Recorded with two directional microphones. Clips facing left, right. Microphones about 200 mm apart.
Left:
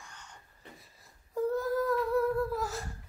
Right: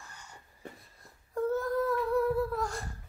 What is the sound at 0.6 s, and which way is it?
Wheeze, 45° right (ahead or behind).